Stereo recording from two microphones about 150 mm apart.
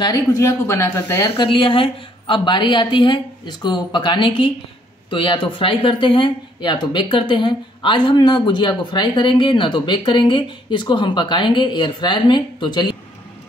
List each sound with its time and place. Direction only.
0.0 s a woman's voice: 25° left (ahead or behind)
1.4 s speech: 35° left (ahead or behind)